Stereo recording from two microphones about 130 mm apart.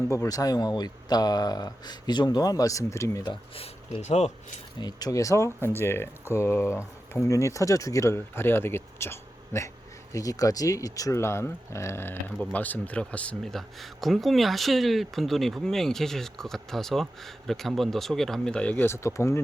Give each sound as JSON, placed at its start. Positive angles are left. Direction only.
{"t": 0.1, "sound": "speech", "side_deg": 25}
{"t": 3.2, "sound": "speech", "side_deg": 45}
{"t": 4.8, "sound": "speech", "side_deg": 30}